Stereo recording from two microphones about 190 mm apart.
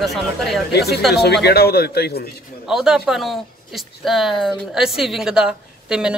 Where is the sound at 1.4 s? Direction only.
55° left (ahead or behind).